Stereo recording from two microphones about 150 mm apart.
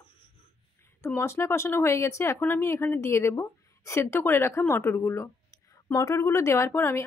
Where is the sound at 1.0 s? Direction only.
15° left (ahead or behind).